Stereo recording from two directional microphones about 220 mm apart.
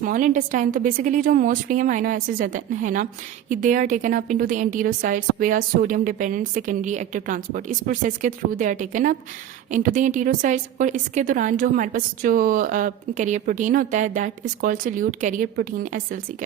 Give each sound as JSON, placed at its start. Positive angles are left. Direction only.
{"t": 0.0, "sound": "a woman's voice", "side_deg": -35}